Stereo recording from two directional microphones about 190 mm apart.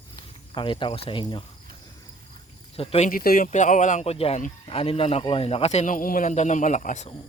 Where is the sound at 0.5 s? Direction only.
25° left (ahead or behind).